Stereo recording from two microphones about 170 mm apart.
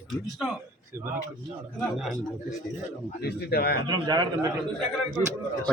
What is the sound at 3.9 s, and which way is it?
Speech, 25° right (ahead or behind).